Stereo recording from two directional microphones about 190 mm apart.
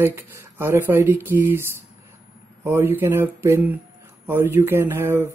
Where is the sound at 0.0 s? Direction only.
15° right (ahead or behind).